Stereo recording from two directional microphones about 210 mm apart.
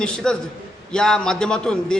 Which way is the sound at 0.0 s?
5° left (ahead or behind).